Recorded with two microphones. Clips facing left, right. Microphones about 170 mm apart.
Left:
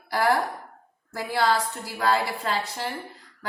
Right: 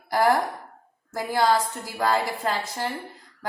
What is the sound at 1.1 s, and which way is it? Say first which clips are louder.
A woman's voice: right 2 dB; 45° right (ahead or behind).